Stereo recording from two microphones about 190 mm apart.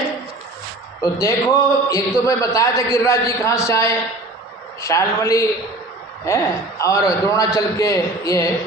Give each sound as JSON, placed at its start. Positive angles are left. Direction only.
{"t": 1.0, "sound": "a man's voice", "side_deg": 20}